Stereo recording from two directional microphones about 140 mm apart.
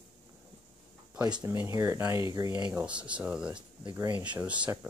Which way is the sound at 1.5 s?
15° right (ahead or behind).